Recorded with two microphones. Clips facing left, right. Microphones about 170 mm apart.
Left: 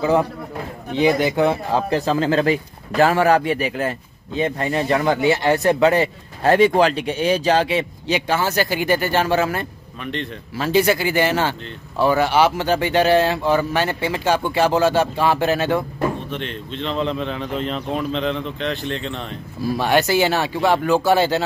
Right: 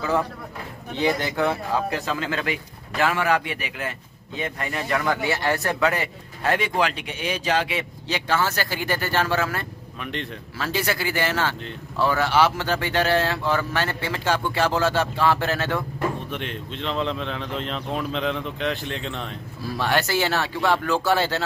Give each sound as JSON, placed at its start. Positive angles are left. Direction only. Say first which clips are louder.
{"t": 0.0, "sound": "speech", "louder": "left 6 dB", "side_deg": 20}
{"t": 8.1, "sound": "speech", "louder": "left 3 dB", "side_deg": 15}
{"t": 16.3, "sound": "speech", "louder": "left 3 dB", "side_deg": -5}
{"t": 19.6, "sound": "speech", "louder": "left 6 dB", "side_deg": 15}